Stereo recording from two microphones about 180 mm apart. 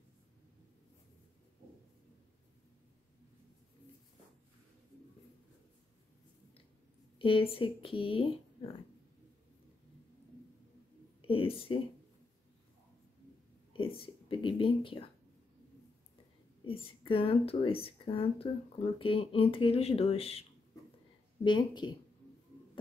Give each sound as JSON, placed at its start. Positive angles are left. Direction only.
{"t": 7.2, "sound": "a woman's voice", "side_deg": 30}
{"t": 11.2, "sound": "a woman's voice", "side_deg": 30}
{"t": 13.7, "sound": "speech", "side_deg": 30}
{"t": 16.6, "sound": "a woman's voice", "side_deg": 30}
{"t": 21.5, "sound": "speech", "side_deg": 25}